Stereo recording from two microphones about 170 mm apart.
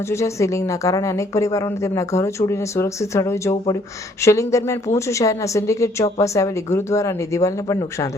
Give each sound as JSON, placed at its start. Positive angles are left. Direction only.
{"t": 0.1, "sound": "a woman's voice", "side_deg": 15}